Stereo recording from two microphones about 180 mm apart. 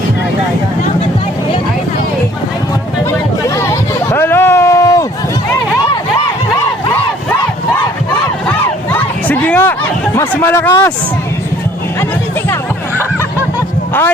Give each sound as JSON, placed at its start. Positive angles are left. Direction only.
{"t": 3.5, "sound": "hubbub", "side_deg": 15}
{"t": 8.4, "sound": "crowd", "side_deg": 10}
{"t": 10.2, "sound": "speech", "side_deg": 10}